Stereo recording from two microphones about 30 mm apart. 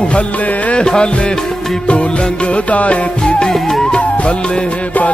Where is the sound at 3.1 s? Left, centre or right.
Left.